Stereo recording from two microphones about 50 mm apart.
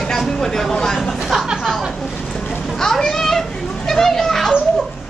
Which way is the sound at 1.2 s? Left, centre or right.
Centre.